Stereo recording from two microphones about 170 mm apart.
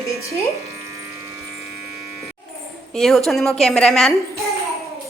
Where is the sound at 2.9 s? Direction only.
Centre (ahead or behind).